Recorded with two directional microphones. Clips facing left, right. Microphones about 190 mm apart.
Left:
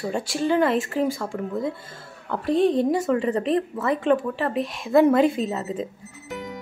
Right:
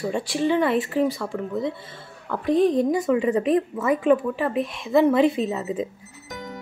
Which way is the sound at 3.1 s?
5° right (ahead or behind).